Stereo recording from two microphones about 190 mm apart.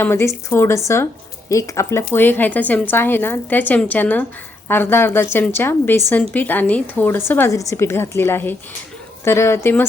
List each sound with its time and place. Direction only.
0.0 s a woman's voice: 10° left (ahead or behind)